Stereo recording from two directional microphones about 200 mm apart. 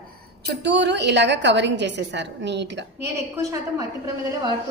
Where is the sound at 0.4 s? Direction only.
60° right (ahead or behind).